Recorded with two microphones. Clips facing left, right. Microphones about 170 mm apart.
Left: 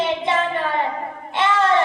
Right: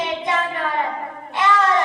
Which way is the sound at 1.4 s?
25° left (ahead or behind).